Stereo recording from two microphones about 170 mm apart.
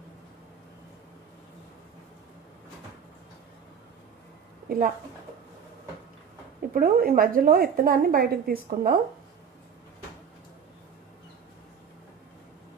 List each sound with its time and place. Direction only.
4.6 s speech: 60° right (ahead or behind)
6.7 s a woman's voice: 60° right (ahead or behind)